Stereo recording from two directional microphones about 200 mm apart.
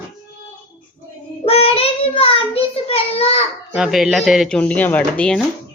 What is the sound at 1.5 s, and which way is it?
A child's voice, 30° left (ahead or behind).